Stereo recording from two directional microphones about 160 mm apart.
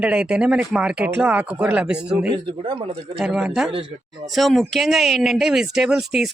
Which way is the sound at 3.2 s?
5° right (ahead or behind).